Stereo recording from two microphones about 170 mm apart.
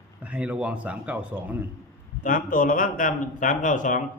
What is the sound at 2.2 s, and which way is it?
A man's voice, 55° left (ahead or behind).